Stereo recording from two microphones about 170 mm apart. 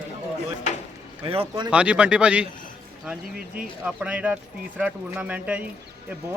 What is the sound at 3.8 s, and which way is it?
Speech, 5° right (ahead or behind).